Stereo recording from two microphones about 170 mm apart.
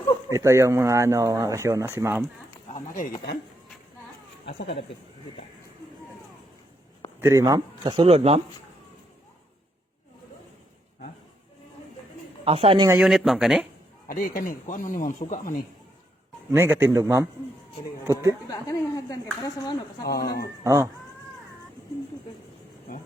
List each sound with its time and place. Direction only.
0.3 s speech: 15° right (ahead or behind)
2.7 s a sound: 45° left (ahead or behind)
7.2 s a man's voice: 15° right (ahead or behind); by 8.4 s 35° right (ahead or behind)
12.5 s speech: 35° right (ahead or behind)
13.0 s speech: centre (ahead or behind)
14.1 s a man's voice: 55° left (ahead or behind)
16.5 s speech: 10° right (ahead or behind)
18.4 s speech: 20° left (ahead or behind)
20.1 s speech: 65° left (ahead or behind)
20.7 s speech: 15° right (ahead or behind)